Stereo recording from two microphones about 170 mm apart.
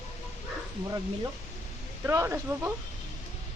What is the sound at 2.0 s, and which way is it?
Speech, 15° right (ahead or behind).